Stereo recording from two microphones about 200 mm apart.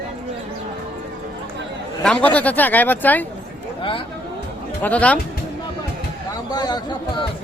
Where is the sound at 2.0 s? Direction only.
5° left (ahead or behind).